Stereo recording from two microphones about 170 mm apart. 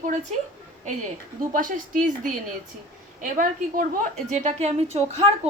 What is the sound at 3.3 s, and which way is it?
A woman's voice, 50° right (ahead or behind).